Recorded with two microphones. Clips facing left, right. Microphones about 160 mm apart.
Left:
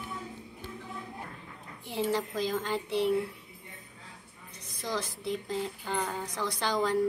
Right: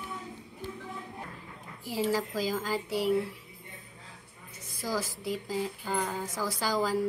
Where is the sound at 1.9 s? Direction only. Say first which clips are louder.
Right 1 dB; centre (ahead or behind).